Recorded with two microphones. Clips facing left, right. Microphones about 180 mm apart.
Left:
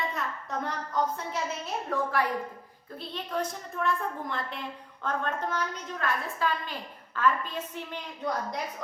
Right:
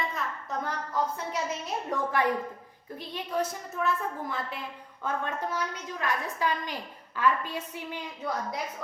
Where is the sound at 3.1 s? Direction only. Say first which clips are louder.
Right 2 dB; 10° right (ahead or behind).